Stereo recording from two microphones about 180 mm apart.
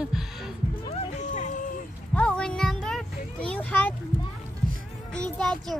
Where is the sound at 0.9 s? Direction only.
40° left (ahead or behind).